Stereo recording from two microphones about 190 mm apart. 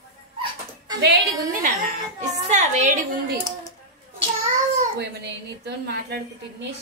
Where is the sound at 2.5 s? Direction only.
40° right (ahead or behind).